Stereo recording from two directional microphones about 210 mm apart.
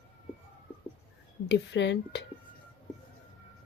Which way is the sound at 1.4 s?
55° left (ahead or behind).